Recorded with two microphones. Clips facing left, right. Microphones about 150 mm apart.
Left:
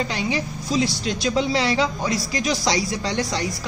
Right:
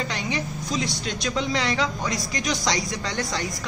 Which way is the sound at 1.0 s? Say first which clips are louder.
Left 5 dB; 30° left (ahead or behind).